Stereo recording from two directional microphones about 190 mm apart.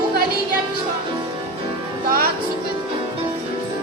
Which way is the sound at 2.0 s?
50° right (ahead or behind).